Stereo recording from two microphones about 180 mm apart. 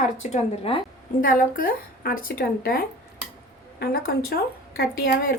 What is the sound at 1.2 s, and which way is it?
Speech, 50° left (ahead or behind).